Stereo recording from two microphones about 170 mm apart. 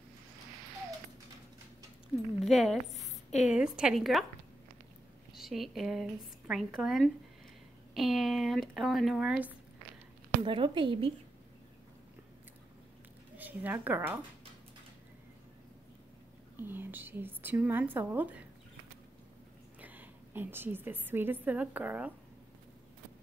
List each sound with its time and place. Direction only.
2.4 s a woman's voice: centre (ahead or behind)
5.3 s a woman's voice: centre (ahead or behind)
10.4 s speech: 30° right (ahead or behind)
13.4 s speech: 10° right (ahead or behind)
16.5 s speech: 10° right (ahead or behind)
19.8 s a woman's voice: 10° right (ahead or behind)